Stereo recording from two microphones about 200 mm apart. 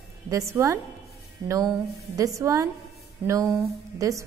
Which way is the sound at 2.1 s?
15° right (ahead or behind).